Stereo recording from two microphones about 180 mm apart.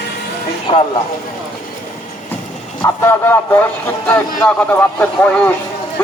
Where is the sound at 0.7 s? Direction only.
35° left (ahead or behind).